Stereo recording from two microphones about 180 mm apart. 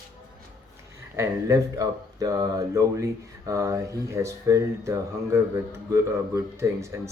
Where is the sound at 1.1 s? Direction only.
20° right (ahead or behind).